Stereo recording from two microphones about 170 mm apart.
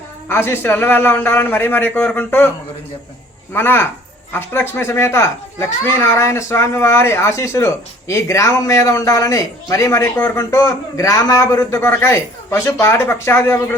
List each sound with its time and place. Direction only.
0.3 s a child's voice: 15° left (ahead or behind)
3.5 s a child's voice: 10° left (ahead or behind)